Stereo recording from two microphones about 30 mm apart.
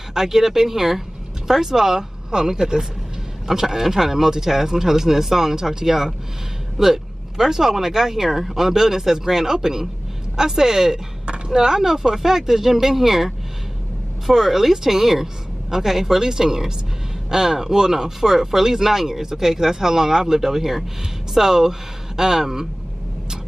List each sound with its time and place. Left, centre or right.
0.1 s speech: centre
3.4 s speech: centre
11.2 s a sound: right
11.5 s speech: right